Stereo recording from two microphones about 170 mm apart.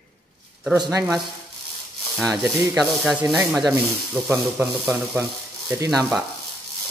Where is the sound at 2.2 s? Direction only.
20° right (ahead or behind).